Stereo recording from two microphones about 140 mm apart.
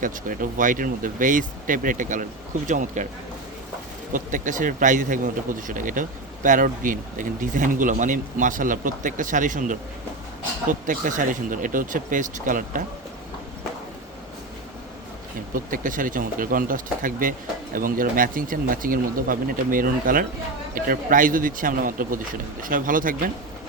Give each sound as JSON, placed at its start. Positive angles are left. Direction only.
{"t": 0.0, "sound": "speech", "side_deg": -75}
{"t": 4.1, "sound": "speech", "side_deg": -70}
{"t": 15.5, "sound": "speech", "side_deg": -75}